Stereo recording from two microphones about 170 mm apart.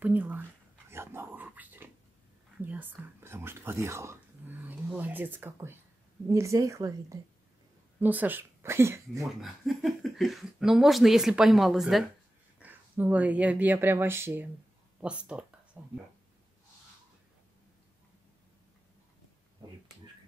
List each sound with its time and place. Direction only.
0.0 s speech: 10° right (ahead or behind)
0.8 s dog: 15° right (ahead or behind)
2.6 s speech: 10° right (ahead or behind)
9.4 s speech: centre (ahead or behind)
15.0 s a sound: 5° right (ahead or behind)